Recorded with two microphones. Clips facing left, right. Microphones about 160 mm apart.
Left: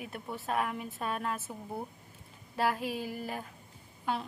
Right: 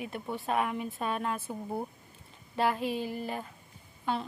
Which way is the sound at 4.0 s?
5° left (ahead or behind).